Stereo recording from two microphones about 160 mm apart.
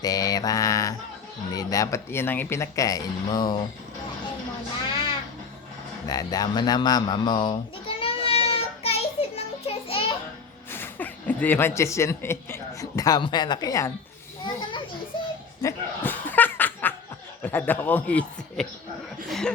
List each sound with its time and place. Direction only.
0.0 s mantra: 20° left (ahead or behind)
1.5 s speech: 20° left (ahead or behind)
4.9 s goat: 30° left (ahead or behind)
6.1 s a sound: 25° left (ahead or behind)
10.7 s speech: 10° left (ahead or behind)
15.1 s children playing: 30° left (ahead or behind)
15.6 s chuckle: 10° left (ahead or behind)
17.4 s a man's voice: 10° left (ahead or behind)
19.3 s chuckle: 5° left (ahead or behind)